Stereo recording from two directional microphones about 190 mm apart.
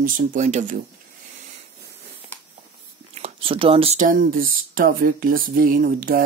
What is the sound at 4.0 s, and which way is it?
Speech, 45° right (ahead or behind).